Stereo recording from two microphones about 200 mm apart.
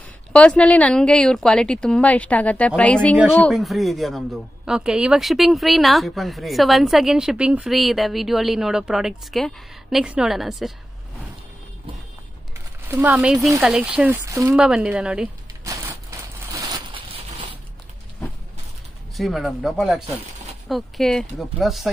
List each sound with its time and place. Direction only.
0.3 s speech: 5° left (ahead or behind)
12.8 s speech: 10° right (ahead or behind)
14.5 s speech: 5° right (ahead or behind)
15.6 s a sound: 15° right (ahead or behind)
19.1 s speech: centre (ahead or behind)